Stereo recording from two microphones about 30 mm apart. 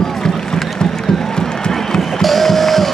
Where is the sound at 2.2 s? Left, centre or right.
Centre.